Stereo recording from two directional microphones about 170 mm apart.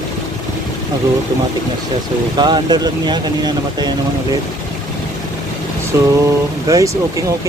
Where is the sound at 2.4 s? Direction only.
25° right (ahead or behind).